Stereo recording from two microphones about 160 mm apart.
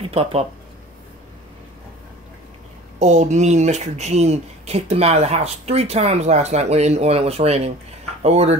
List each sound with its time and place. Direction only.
0.1 s speech: 40° right (ahead or behind)
3.0 s speech: 45° right (ahead or behind)